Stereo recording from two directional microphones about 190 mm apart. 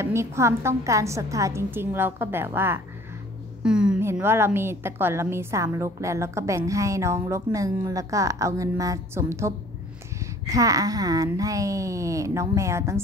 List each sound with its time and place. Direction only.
0.0 s a woman's voice: 15° right (ahead or behind)